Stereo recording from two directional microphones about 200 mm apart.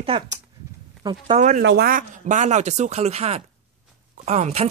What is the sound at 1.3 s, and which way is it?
Speech, 35° right (ahead or behind).